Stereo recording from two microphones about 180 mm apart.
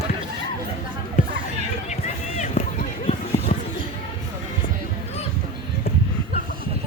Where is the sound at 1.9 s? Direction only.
40° left (ahead or behind).